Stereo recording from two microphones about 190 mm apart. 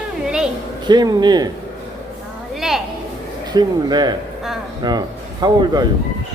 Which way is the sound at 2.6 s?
Centre (ahead or behind).